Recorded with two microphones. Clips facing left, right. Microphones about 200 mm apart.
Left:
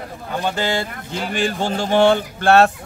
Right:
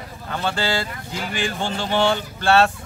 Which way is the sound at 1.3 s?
40° left (ahead or behind).